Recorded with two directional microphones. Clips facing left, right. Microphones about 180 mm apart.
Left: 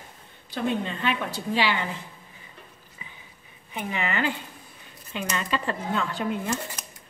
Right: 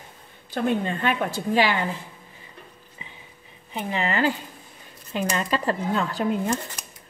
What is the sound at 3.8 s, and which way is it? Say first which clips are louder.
A woman's voice: right 3 dB; 35° right (ahead or behind).